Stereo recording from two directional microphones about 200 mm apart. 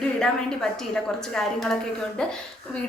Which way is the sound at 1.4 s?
Centre (ahead or behind).